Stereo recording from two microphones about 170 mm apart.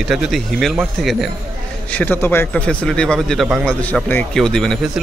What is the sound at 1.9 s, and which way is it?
A man's voice, 10° left (ahead or behind).